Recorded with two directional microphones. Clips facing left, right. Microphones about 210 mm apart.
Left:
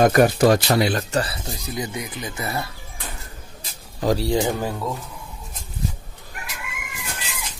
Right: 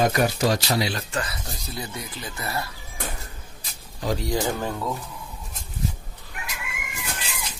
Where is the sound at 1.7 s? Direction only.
15° left (ahead or behind).